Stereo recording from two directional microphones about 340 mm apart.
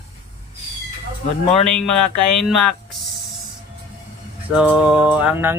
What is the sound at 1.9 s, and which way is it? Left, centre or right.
Speech, left.